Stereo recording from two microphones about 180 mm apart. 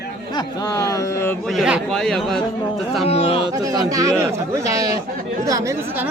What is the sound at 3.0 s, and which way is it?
Speech, 35° left (ahead or behind).